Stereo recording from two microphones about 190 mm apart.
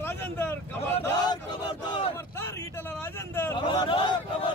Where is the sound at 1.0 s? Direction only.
20° left (ahead or behind).